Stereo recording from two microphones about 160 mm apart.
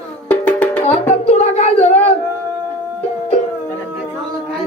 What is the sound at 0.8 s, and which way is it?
Music, 40° left (ahead or behind).